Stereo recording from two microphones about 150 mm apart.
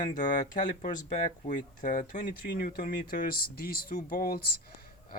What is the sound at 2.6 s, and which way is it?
Speech, 85° left.